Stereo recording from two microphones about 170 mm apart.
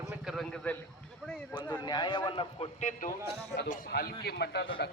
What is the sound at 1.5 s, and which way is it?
A man's voice, 25° left (ahead or behind).